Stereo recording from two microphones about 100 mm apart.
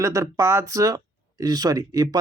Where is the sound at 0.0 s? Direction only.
30° right (ahead or behind).